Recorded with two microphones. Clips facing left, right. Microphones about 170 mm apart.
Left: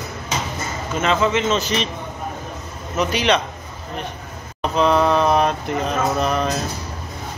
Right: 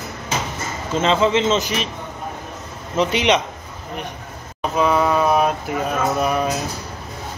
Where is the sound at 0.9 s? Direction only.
25° right (ahead or behind).